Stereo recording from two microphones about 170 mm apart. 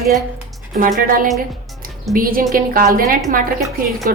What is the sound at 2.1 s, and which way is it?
A woman's voice, 55° right (ahead or behind).